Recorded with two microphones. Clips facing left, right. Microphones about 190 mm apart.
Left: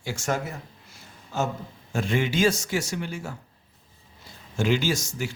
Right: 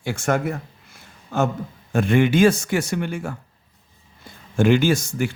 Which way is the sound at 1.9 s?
55° right (ahead or behind).